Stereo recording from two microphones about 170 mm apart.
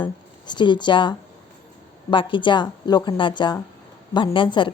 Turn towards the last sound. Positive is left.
turn(degrees=30)  # may be behind; listen again after turning